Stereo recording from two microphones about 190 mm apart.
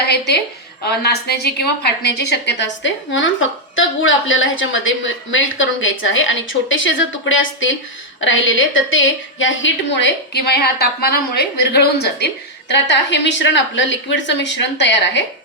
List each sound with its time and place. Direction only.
0.9 s a woman's voice: 60° left (ahead or behind); by 3.3 s 80° left
3.8 s a woman's voice: 90° left; by 15.2 s 70° left (ahead or behind)